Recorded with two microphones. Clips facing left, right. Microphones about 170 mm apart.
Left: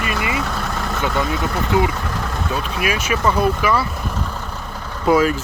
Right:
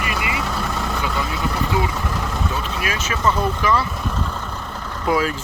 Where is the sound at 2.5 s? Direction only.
15° left (ahead or behind).